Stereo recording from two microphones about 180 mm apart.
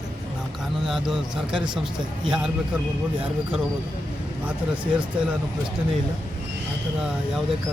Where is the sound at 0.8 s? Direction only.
Centre (ahead or behind).